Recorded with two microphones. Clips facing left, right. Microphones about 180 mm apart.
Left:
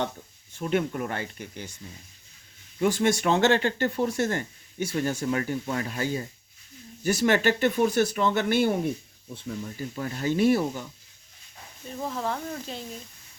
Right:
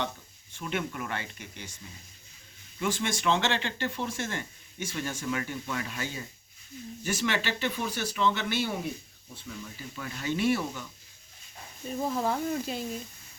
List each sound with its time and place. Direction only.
0.6 s speech: 40° left (ahead or behind)
2.8 s speech: 40° left (ahead or behind)
12.0 s speech: 10° right (ahead or behind)